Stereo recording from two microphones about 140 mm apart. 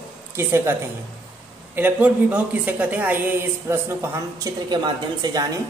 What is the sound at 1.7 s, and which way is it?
A woman's voice, 10° right (ahead or behind).